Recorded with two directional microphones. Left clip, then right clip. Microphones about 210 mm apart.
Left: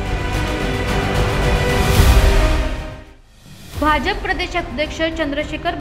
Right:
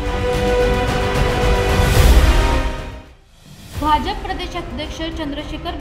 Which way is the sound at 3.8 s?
10° left (ahead or behind).